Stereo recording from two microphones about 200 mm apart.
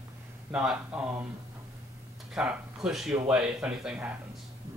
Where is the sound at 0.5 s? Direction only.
5° right (ahead or behind).